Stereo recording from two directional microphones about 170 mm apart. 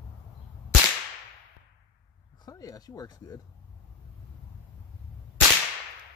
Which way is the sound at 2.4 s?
20° left (ahead or behind).